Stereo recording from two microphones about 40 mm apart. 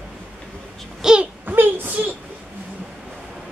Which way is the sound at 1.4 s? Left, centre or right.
Right.